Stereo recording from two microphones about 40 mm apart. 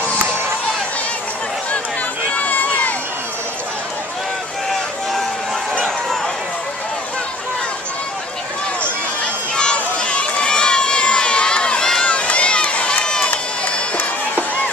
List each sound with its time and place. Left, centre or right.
2.3 s crowd: left
9.2 s run: left
12.1 s run: left